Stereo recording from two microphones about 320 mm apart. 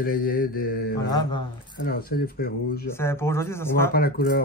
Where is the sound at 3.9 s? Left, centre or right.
Left.